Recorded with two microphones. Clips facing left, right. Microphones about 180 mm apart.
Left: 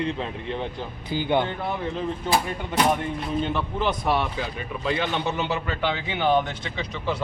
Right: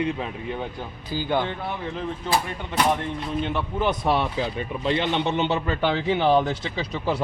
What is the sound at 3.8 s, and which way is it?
A man's voice, 20° right (ahead or behind).